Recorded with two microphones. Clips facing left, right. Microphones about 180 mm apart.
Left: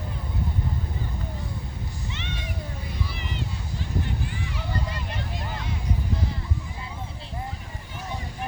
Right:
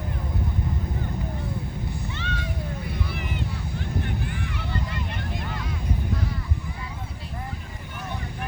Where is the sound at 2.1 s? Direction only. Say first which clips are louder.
Right 3 dB; 20° left (ahead or behind).